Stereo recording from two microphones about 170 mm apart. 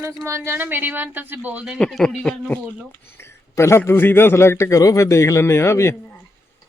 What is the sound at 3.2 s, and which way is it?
A man's voice, 15° left (ahead or behind).